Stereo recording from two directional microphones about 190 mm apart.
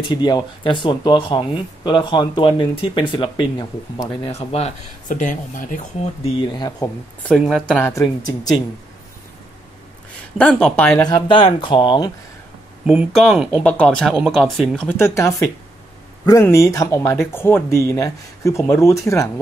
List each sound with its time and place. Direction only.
0.1 s speech: 20° left (ahead or behind); by 5.8 s 45° left (ahead or behind)
6.2 s speech: 20° left (ahead or behind)
7.2 s speech: centre (ahead or behind)
7.8 s speech: 15° left (ahead or behind)
10.3 s speech: 5° left (ahead or behind)
10.9 s speech: 20° left (ahead or behind)
12.8 s speech: 5° right (ahead or behind)
14.9 s speech: 15° left (ahead or behind)